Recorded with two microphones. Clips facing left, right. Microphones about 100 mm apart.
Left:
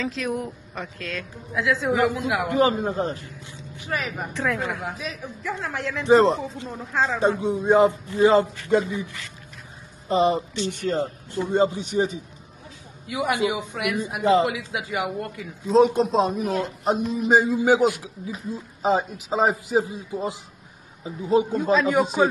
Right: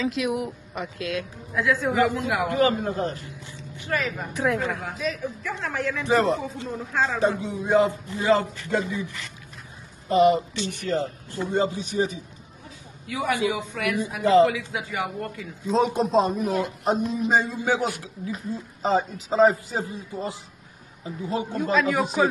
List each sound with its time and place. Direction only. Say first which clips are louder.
0.2 s a man's voice: right 1 dB; 5° right (ahead or behind)
0.7 s a man's voice: right 4 dB; 15° right (ahead or behind)
1.5 s a man's voice: left 1 dB; centre (ahead or behind); by 3.2 s 20° left (ahead or behind)
4.3 s a man's voice: right 2 dB; 10° right (ahead or behind)
4.9 s a man's voice: right 5 dB; 5° left (ahead or behind)
6.0 s speech: left 6 dB; 25° left (ahead or behind)
10.0 s a man's voice: right 2 dB; 20° left (ahead or behind); by 17.4 s centre (ahead or behind)
17.4 s a man's voice: left 6 dB; 15° left (ahead or behind)